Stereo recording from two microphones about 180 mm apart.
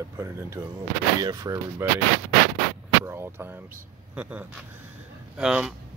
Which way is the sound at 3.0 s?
15° right (ahead or behind).